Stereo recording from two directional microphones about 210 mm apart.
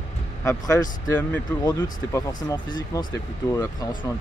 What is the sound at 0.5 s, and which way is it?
Speech, 15° left (ahead or behind).